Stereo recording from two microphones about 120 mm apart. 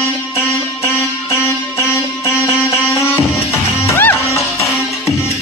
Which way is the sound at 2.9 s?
20° left (ahead or behind).